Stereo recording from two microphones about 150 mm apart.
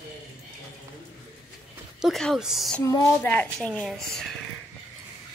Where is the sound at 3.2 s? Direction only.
10° left (ahead or behind).